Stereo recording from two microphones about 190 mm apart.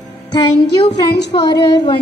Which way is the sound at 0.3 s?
25° left (ahead or behind).